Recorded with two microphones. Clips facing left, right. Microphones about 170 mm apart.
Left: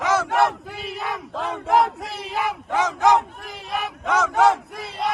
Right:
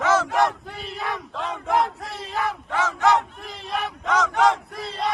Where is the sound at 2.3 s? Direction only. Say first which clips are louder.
Left 2 dB; 15° left (ahead or behind).